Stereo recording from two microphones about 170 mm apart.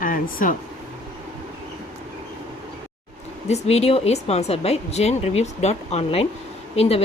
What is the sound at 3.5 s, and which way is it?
Speech, 40° left (ahead or behind).